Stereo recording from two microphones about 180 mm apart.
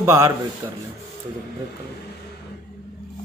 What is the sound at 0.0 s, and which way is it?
Speech, 15° right (ahead or behind).